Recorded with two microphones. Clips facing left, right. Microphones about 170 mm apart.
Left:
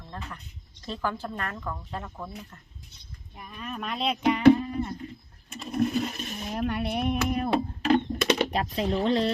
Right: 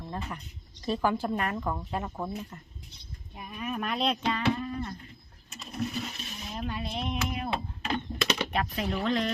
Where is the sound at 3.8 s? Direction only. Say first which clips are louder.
Even; centre (ahead or behind).